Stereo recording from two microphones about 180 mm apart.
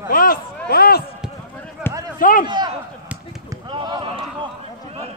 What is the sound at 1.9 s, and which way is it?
Run, 10° left (ahead or behind).